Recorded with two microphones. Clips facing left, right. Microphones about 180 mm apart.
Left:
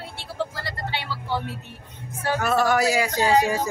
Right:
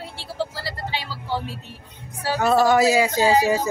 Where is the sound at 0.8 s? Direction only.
10° right (ahead or behind).